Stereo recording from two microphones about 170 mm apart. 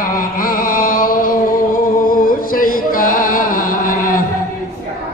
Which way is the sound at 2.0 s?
55° left (ahead or behind).